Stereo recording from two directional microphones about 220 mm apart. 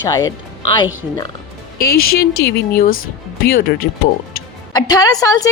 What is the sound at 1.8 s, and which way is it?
Speech, 45° left (ahead or behind).